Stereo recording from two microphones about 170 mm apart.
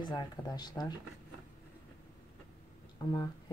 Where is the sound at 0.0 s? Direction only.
25° left (ahead or behind).